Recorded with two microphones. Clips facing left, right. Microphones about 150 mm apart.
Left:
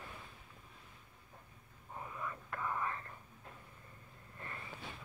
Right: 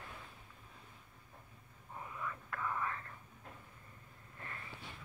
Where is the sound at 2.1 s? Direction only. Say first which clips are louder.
Even; 20° left (ahead or behind).